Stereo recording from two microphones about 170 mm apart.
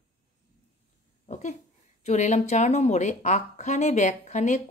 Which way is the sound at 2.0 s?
45° left (ahead or behind).